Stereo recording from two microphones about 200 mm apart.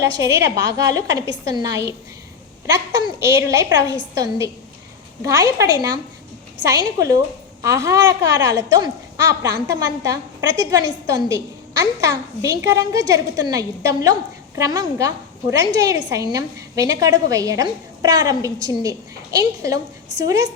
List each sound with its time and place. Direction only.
0.0 s a child's voice: 15° right (ahead or behind)
3.0 s a child's voice: 15° right (ahead or behind)